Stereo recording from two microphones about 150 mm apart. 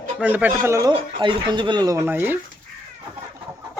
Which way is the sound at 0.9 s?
30° right (ahead or behind).